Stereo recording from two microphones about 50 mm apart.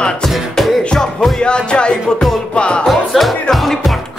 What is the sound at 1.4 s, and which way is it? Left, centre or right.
Music, centre.